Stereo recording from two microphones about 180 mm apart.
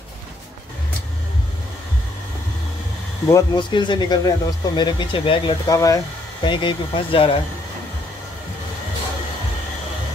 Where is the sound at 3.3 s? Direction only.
20° left (ahead or behind).